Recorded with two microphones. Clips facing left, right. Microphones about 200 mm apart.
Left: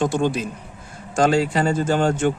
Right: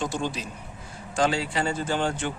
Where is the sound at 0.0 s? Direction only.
55° left (ahead or behind).